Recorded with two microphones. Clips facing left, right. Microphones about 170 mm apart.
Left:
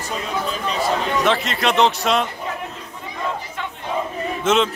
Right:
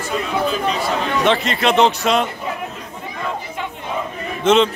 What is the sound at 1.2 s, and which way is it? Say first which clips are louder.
Speech: right 3 dB; centre (ahead or behind).